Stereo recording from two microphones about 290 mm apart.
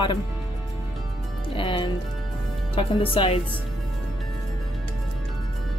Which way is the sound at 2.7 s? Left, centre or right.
Centre.